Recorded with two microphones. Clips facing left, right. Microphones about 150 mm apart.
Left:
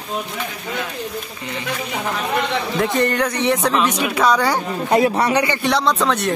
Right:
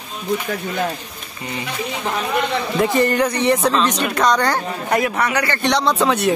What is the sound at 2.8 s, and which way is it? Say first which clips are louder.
Speech: right 3 dB; centre (ahead or behind).